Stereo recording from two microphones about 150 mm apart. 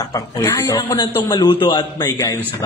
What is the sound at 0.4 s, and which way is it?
A man's voice, 25° left (ahead or behind).